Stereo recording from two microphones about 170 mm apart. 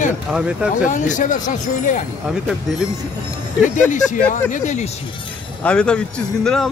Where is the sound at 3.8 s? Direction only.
50° left (ahead or behind).